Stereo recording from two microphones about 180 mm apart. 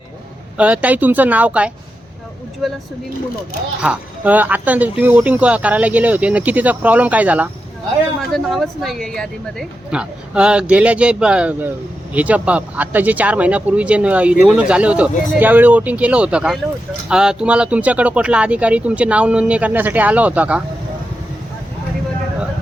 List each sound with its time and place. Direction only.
0.5 s speech: 5° right (ahead or behind)
3.8 s speech: 10° right (ahead or behind)